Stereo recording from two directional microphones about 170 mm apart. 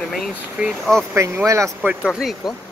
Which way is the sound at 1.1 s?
15° right (ahead or behind).